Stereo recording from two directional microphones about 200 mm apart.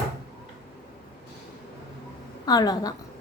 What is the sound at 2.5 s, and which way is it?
Speech, 20° left (ahead or behind).